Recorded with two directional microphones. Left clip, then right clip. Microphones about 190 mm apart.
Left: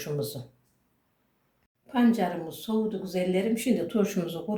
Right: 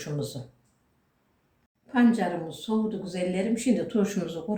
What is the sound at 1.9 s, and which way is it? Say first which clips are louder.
Speech: right 1 dB; 25° left (ahead or behind).